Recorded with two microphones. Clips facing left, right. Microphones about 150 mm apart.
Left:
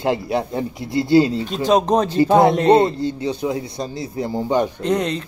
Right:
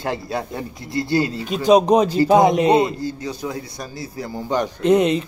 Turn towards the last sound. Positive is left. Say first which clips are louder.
# right 5 dB
turn(degrees=-15)  # may be behind; listen again after turning